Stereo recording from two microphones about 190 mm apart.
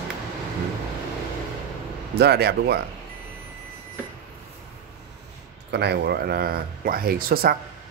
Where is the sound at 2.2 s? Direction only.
60° right (ahead or behind).